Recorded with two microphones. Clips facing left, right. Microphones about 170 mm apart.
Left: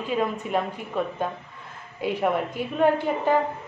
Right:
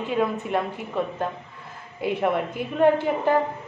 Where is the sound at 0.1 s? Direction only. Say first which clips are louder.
Right 1 dB; centre (ahead or behind).